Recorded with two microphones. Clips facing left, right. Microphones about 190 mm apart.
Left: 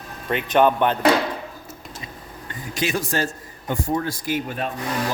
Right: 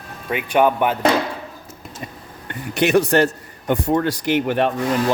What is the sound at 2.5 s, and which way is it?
A man's voice, 65° right (ahead or behind).